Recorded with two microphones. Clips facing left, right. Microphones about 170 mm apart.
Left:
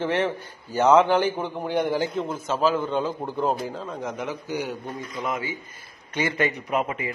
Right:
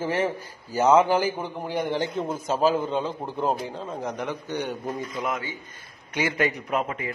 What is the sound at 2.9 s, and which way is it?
A man's voice, centre (ahead or behind).